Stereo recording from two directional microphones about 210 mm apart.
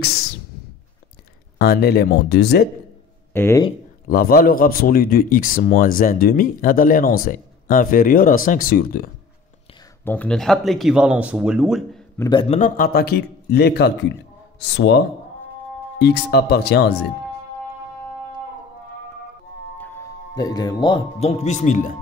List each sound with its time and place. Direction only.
1.6 s speech: 50° left (ahead or behind)
3.3 s speech: 10° left (ahead or behind)
4.1 s speech: 45° left (ahead or behind)
10.0 s speech: 5° left (ahead or behind)
12.2 s a man's voice: 20° left (ahead or behind)
12.5 s speech: 40° left (ahead or behind)
19.8 s speech: 15° left (ahead or behind); by 21.9 s 35° left (ahead or behind)